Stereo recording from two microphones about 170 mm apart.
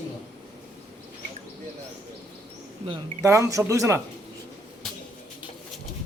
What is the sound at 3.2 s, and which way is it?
Speech, 20° right (ahead or behind).